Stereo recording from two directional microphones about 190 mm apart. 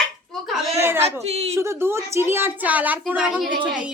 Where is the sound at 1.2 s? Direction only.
30° right (ahead or behind).